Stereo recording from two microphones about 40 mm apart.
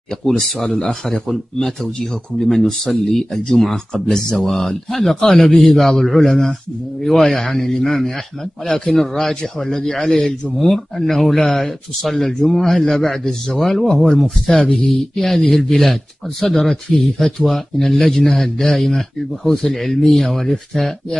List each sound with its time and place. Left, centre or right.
0.4 s a man's voice: centre
2.3 s a man's voice: centre
14.0 s speech: centre
14.6 s a man's voice: centre